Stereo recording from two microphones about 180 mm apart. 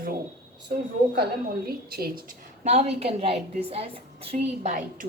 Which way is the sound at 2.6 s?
35° right (ahead or behind).